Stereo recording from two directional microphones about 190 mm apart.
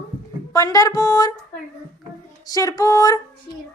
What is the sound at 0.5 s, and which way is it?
Speech, 20° left (ahead or behind).